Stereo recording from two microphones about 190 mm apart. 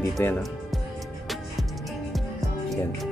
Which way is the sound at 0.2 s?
15° left (ahead or behind).